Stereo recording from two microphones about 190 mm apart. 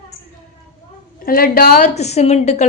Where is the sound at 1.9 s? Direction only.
35° left (ahead or behind).